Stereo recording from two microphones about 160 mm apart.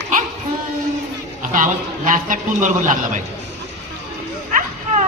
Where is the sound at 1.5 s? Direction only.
55° right (ahead or behind).